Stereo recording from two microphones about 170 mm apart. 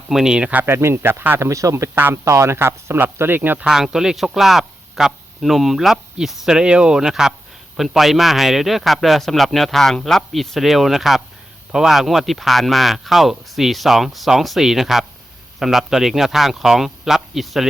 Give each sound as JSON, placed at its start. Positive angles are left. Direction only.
{"t": 0.1, "sound": "speech", "side_deg": -5}